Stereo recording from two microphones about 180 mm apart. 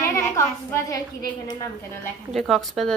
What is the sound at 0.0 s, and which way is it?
A woman's voice, 15° left (ahead or behind).